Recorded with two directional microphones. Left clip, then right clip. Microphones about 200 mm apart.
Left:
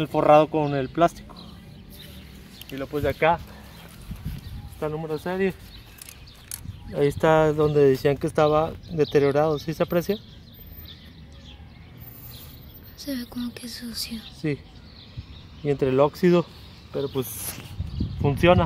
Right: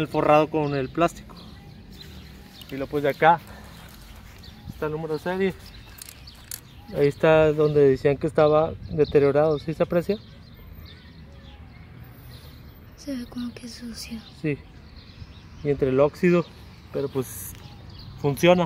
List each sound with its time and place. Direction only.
0.0 s speech: 15° left (ahead or behind)
2.7 s speech: 5° right (ahead or behind)
4.7 s speech: 25° left (ahead or behind)
6.9 s speech: 5° left (ahead or behind)
13.0 s speech: centre (ahead or behind)
15.6 s speech: 15° left (ahead or behind)
16.9 s speech: centre (ahead or behind)